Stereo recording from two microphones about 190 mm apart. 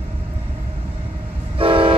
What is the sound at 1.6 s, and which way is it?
Train, 30° right (ahead or behind).